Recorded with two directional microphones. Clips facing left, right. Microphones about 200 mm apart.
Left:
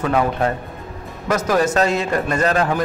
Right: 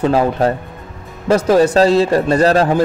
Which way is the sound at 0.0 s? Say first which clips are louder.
Right 5 dB; 30° right (ahead or behind).